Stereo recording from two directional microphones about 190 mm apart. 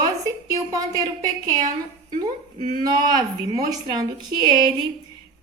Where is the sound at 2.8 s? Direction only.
20° right (ahead or behind).